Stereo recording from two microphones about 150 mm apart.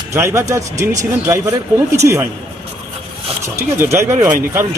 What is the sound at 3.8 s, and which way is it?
Speech, 20° right (ahead or behind).